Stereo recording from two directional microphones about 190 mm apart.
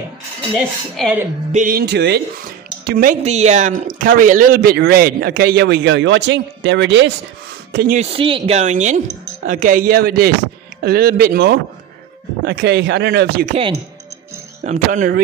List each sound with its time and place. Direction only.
0.6 s speech: 5° right (ahead or behind)
1.5 s a man's voice: 45° right (ahead or behind)
3.3 s a man's voice: 35° right (ahead or behind); by 7.1 s 70° right (ahead or behind)
7.7 s speech: 50° right (ahead or behind)
8.0 s a man's voice: 30° right (ahead or behind); by 13.5 s 60° right (ahead or behind)
14.6 s speech: 40° right (ahead or behind)